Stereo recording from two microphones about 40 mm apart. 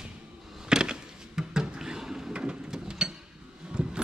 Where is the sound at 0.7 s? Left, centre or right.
Centre.